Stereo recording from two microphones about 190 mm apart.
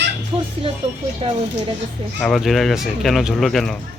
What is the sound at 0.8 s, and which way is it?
Speech, 30° right (ahead or behind).